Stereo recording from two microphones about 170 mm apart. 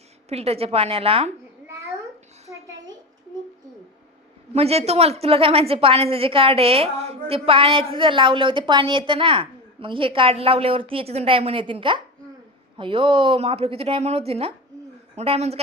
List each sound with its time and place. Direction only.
0.3 s a woman's voice: 35° right (ahead or behind)
4.5 s a woman's voice: 35° right (ahead or behind)